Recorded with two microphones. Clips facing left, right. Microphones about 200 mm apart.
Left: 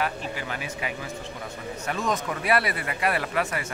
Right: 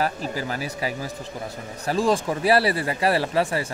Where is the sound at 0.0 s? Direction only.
35° right (ahead or behind).